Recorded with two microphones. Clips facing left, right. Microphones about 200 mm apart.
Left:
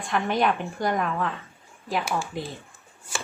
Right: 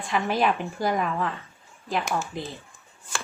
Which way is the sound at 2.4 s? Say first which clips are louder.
Left 1 dB; centre (ahead or behind).